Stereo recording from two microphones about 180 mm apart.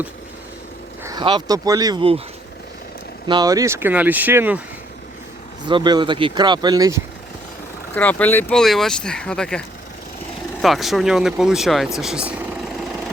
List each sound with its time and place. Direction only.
1.0 s speech: 25° right (ahead or behind)
3.2 s speech: 20° right (ahead or behind)
5.6 s speech: 25° right (ahead or behind)
7.9 s speech: 10° left (ahead or behind)